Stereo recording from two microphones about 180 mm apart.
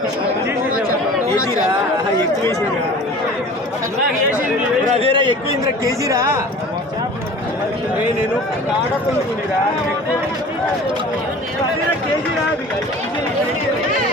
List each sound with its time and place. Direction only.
4.9 s a man's voice: 30° right (ahead or behind)
5.8 s speech: 20° right (ahead or behind)